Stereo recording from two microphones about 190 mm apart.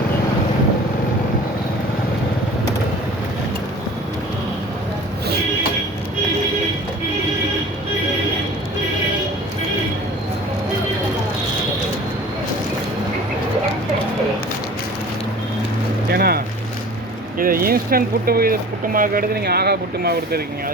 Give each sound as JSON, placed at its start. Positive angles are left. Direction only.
{"t": 16.1, "sound": "vehicle", "side_deg": -55}
{"t": 17.3, "sound": "a sound", "side_deg": -50}
{"t": 18.9, "sound": "speech", "side_deg": -50}